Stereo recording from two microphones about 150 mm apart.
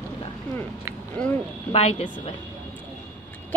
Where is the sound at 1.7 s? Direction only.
45° left (ahead or behind).